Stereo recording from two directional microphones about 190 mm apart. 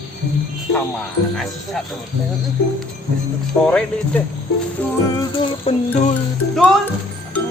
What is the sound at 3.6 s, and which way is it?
Speech, 5° left (ahead or behind).